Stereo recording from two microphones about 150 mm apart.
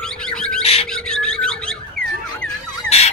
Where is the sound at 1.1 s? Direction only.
5° left (ahead or behind).